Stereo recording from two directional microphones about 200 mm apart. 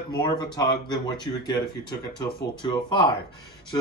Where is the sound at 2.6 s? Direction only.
25° left (ahead or behind).